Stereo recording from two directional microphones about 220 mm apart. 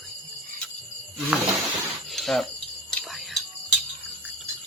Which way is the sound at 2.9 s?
Centre (ahead or behind).